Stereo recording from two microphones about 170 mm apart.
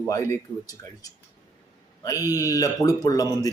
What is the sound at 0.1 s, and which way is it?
Speech, 15° left (ahead or behind).